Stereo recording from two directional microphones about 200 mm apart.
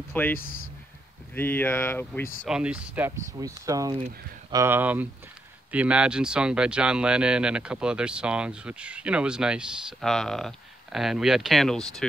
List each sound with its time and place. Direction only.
0.1 s speech: 10° left (ahead or behind)
2.4 s speech: 5° right (ahead or behind)